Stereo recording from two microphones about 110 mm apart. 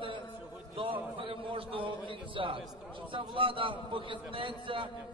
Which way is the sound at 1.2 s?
55° right (ahead or behind).